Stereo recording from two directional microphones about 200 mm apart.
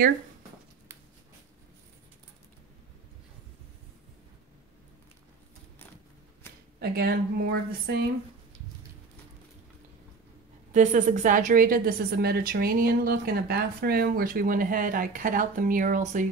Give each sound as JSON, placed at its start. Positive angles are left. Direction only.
{"t": 6.8, "sound": "a woman's voice", "side_deg": -50}
{"t": 10.7, "sound": "a woman's voice", "side_deg": -40}